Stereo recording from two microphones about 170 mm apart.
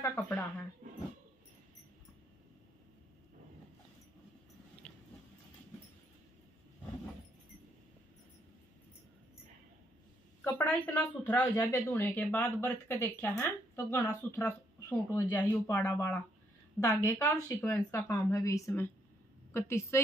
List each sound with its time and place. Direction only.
0.0 s speech: 15° left (ahead or behind)
4.8 s a sound: 5° left (ahead or behind)
10.4 s a woman's voice: 10° left (ahead or behind)